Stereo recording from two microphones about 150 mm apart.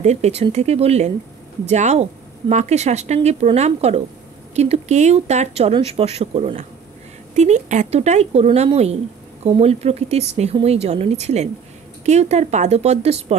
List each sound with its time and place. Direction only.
0.0 s speech: 50° right (ahead or behind)